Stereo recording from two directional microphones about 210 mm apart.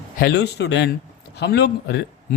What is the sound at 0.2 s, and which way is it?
A man's voice, 55° left (ahead or behind).